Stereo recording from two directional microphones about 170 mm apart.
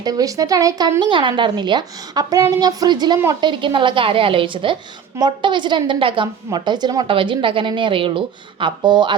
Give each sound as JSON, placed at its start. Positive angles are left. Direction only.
{"t": 0.0, "sound": "a woman's voice", "side_deg": -20}